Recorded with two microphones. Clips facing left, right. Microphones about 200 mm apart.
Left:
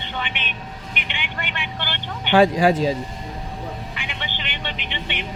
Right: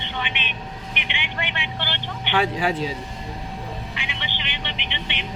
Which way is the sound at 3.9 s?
50° left (ahead or behind).